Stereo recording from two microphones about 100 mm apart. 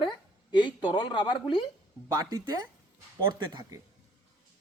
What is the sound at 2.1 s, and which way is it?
Speech, 40° right (ahead or behind).